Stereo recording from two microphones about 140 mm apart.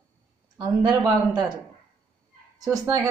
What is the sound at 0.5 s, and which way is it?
Speech, 30° right (ahead or behind).